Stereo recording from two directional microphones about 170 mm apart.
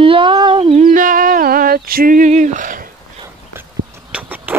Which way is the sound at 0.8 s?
50° right (ahead or behind).